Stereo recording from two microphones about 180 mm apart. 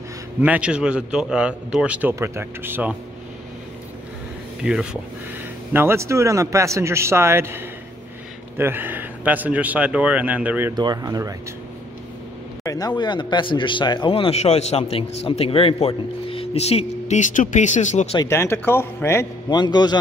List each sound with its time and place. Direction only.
0.4 s a man's voice: 5° right (ahead or behind)
4.6 s a man's voice: 5° right (ahead or behind)
10.8 s speech: 20° right (ahead or behind)
12.6 s speech: 20° left (ahead or behind); by 18.2 s 35° left (ahead or behind)
18.2 s speech: 15° left (ahead or behind)
19.6 s a man's voice: 25° left (ahead or behind)